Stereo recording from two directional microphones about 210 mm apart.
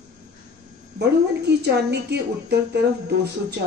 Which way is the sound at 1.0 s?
55° right (ahead or behind).